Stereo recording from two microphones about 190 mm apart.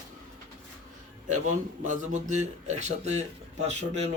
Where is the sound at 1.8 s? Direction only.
40° right (ahead or behind).